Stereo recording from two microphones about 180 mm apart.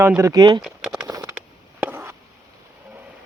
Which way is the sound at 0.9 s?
20° right (ahead or behind).